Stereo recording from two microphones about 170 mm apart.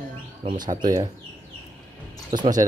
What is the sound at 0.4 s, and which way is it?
Speech, 35° right (ahead or behind).